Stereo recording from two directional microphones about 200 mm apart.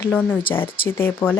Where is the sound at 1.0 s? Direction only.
10° left (ahead or behind).